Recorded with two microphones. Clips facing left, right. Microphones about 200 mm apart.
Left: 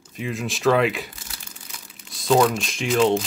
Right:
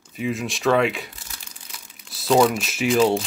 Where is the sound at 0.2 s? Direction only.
Centre (ahead or behind).